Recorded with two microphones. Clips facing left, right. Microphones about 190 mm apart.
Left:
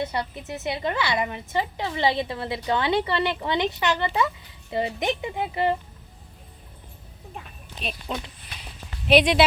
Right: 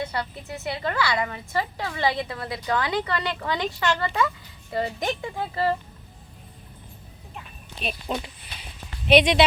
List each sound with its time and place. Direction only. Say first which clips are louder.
0.0 s a woman's voice: left 2 dB; 20° left (ahead or behind)
7.8 s a sound: right 2 dB; 5° right (ahead or behind)
9.0 s speech: right 1 dB; centre (ahead or behind)